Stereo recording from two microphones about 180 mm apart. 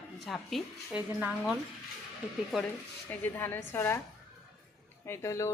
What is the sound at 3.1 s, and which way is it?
Speech, 10° left (ahead or behind).